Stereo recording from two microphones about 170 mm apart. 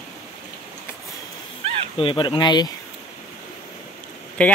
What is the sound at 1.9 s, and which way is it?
Speech, 30° left (ahead or behind).